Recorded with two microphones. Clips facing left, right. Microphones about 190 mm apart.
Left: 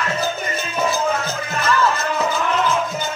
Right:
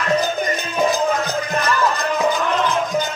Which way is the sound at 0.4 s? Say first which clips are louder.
Right 3 dB; 15° right (ahead or behind).